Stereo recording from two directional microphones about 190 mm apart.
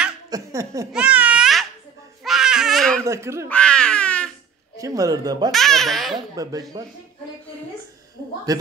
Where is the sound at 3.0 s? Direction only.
15° right (ahead or behind).